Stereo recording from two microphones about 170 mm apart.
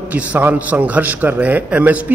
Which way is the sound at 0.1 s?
10° right (ahead or behind).